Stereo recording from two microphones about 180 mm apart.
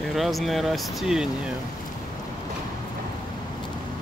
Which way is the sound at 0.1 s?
Centre (ahead or behind).